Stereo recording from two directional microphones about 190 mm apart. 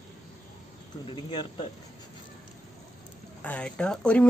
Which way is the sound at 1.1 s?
25° left (ahead or behind).